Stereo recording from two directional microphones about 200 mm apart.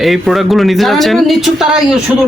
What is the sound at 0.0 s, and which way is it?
Speech, centre (ahead or behind).